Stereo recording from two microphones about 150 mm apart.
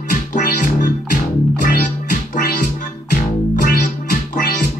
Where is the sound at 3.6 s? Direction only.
55° left (ahead or behind).